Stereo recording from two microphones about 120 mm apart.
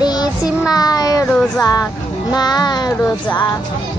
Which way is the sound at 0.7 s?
30° left (ahead or behind).